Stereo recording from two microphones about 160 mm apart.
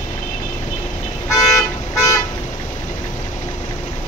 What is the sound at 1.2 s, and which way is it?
Vehicle, 20° left (ahead or behind).